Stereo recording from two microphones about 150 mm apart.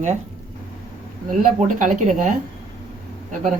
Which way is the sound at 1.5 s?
60° right (ahead or behind).